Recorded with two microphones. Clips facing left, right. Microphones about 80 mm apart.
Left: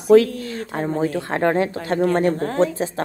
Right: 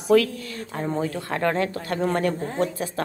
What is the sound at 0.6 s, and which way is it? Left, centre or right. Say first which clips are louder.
Speech: left 4 dB; left.